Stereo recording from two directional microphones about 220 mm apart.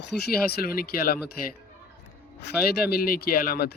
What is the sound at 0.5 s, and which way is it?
Speech, 45° left (ahead or behind).